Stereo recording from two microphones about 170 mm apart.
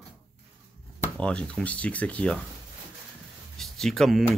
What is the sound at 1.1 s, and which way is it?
Speech, 5° left (ahead or behind).